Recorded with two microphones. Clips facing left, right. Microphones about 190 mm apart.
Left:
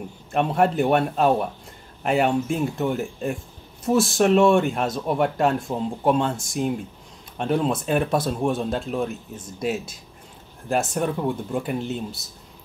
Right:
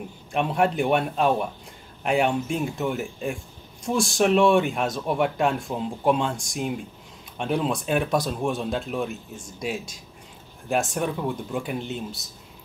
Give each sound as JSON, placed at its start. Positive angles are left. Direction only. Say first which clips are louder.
{"t": 0.3, "sound": "speech", "louder": "left 2 dB", "side_deg": 0}
{"t": 8.4, "sound": "speech", "louder": "left 3 dB", "side_deg": 20}
{"t": 8.6, "sound": "speech", "louder": "left 2 dB", "side_deg": 0}